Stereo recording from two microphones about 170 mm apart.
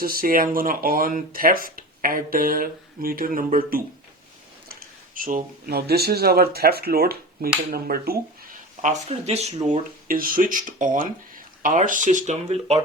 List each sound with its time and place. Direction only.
0.0 s speech: 60° right (ahead or behind)
4.7 s a sound: 55° right (ahead or behind)
5.6 s speech: 70° right (ahead or behind)
8.8 s speech: 40° right (ahead or behind)
10.1 s speech: 55° right (ahead or behind); by 12.8 s 40° right (ahead or behind)